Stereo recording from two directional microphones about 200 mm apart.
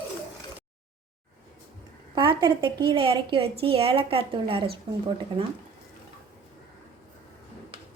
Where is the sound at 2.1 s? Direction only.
25° right (ahead or behind).